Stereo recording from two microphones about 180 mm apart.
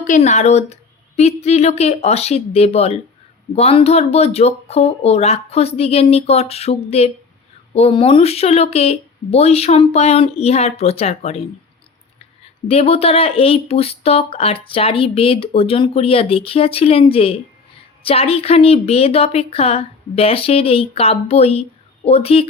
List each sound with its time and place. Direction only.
0.0 s speech: 40° left (ahead or behind)
12.6 s speech: 35° left (ahead or behind)